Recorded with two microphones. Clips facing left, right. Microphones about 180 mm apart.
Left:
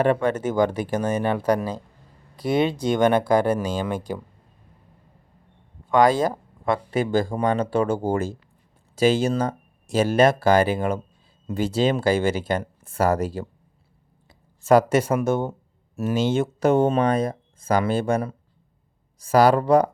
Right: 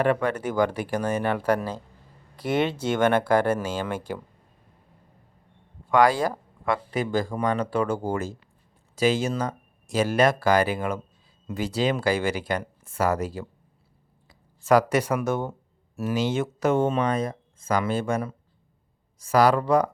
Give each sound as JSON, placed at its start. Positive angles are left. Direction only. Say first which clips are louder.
{"t": 0.0, "sound": "speech", "louder": "left 3 dB", "side_deg": 25}
{"t": 5.9, "sound": "speech", "louder": "left 2 dB", "side_deg": 20}